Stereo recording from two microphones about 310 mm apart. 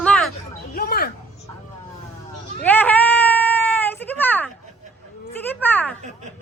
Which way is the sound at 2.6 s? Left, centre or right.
Centre.